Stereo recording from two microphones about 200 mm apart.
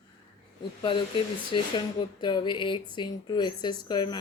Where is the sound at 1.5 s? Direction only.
25° left (ahead or behind).